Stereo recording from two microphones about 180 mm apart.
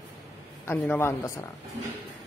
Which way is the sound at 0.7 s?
15° left (ahead or behind).